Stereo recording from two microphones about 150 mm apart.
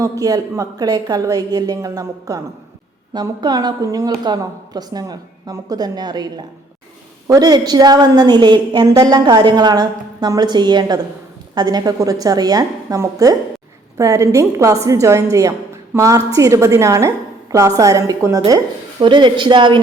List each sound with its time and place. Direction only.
0.0 s a woman's voice: 25° right (ahead or behind)